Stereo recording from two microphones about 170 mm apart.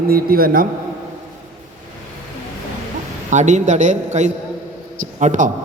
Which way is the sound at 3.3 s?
45° right (ahead or behind).